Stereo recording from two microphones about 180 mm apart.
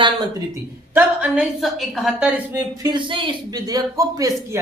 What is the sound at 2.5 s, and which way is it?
Speech, 15° right (ahead or behind).